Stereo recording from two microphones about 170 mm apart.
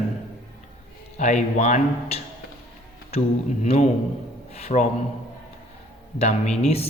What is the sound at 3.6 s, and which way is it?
A man's voice, 45° left (ahead or behind).